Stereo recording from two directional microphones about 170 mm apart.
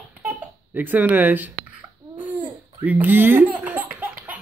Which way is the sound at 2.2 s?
10° right (ahead or behind).